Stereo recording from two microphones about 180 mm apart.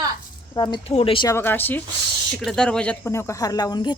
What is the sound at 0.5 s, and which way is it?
Speech, 25° left (ahead or behind).